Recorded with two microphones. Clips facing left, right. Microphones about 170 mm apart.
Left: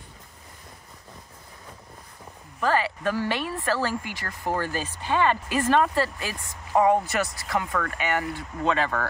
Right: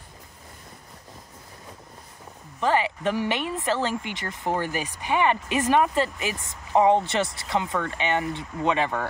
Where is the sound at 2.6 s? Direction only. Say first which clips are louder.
Right 1 dB; 20° right (ahead or behind).